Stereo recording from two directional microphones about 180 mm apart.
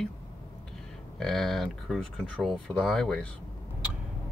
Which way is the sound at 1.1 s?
5° left (ahead or behind).